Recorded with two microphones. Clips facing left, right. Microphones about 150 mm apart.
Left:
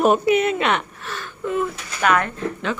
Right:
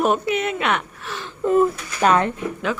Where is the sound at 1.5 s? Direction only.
40° right (ahead or behind).